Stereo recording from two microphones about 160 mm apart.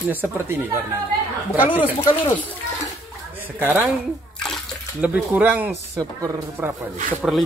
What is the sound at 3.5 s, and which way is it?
Speech, 10° right (ahead or behind).